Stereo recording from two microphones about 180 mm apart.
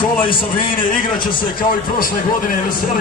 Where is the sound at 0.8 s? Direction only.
50° left (ahead or behind).